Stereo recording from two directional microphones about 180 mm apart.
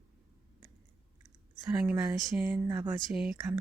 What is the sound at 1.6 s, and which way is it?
Speech, 10° right (ahead or behind).